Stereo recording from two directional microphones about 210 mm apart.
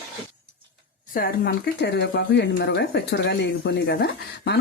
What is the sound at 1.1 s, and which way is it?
Speech, 45° left (ahead or behind).